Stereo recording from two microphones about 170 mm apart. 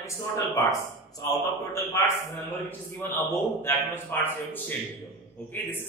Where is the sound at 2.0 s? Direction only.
15° left (ahead or behind).